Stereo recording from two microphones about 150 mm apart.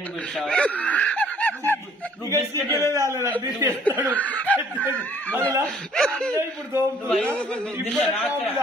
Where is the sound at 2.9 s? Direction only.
20° right (ahead or behind).